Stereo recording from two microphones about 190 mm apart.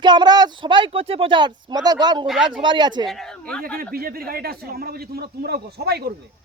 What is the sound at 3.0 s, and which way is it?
Speech, centre (ahead or behind).